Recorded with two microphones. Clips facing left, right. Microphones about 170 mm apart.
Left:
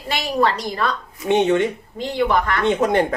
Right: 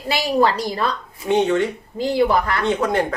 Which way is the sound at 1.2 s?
20° left (ahead or behind).